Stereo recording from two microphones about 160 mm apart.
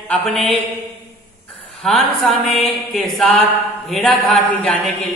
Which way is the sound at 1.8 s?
Centre (ahead or behind).